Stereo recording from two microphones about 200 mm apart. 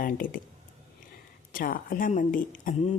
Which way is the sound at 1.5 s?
45° left (ahead or behind).